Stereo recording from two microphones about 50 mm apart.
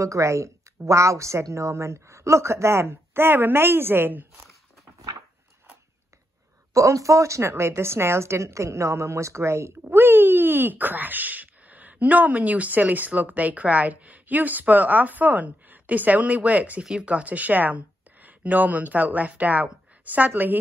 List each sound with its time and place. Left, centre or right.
0.0 s a woman's voice: right
6.7 s speech: right
7.4 s a woman's voice: right
9.8 s speech: right